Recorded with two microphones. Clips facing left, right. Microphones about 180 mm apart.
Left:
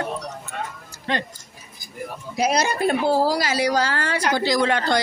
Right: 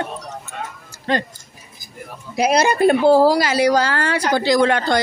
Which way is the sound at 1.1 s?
40° right (ahead or behind).